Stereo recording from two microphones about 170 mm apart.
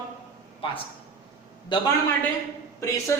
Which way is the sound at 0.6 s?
30° left (ahead or behind).